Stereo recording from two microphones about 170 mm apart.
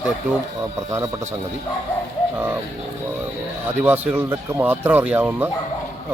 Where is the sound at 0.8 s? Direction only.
20° right (ahead or behind).